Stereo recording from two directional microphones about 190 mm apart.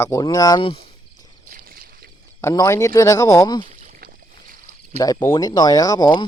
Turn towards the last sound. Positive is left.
turn(degrees=20)  # may be behind; listen again after turning